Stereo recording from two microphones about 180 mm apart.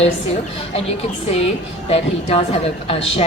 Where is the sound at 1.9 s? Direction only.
35° left (ahead or behind).